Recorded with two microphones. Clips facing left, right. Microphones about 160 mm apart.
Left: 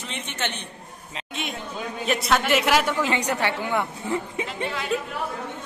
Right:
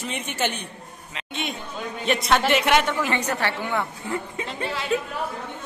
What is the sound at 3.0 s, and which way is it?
A woman's voice, 15° left (ahead or behind).